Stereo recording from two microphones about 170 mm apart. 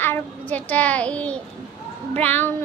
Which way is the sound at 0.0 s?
10° left (ahead or behind).